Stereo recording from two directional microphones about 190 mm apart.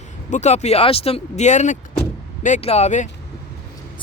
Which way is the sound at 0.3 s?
35° left (ahead or behind).